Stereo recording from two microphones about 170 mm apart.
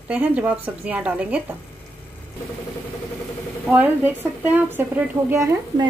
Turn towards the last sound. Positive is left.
turn(degrees=-15)  # may be behind; listen again after turning